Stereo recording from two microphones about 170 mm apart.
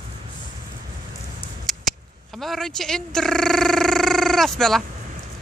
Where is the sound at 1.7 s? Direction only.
Centre (ahead or behind).